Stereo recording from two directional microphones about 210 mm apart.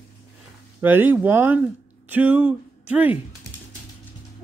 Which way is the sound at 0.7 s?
10° right (ahead or behind).